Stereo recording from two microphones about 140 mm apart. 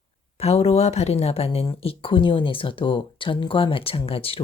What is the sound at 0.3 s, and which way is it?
A woman's voice, 45° left (ahead or behind).